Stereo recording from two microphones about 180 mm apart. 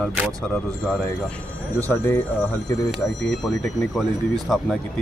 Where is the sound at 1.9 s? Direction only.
15° left (ahead or behind).